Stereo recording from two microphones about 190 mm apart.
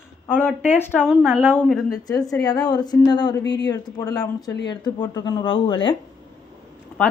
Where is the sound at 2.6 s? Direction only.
20° left (ahead or behind).